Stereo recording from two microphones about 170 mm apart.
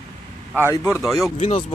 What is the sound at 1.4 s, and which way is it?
Speech, 40° left (ahead or behind).